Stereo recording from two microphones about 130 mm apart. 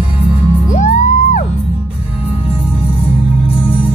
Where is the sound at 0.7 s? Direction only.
70° left (ahead or behind).